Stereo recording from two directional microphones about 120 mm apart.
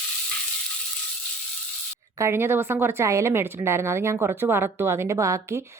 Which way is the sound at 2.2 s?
20° right (ahead or behind).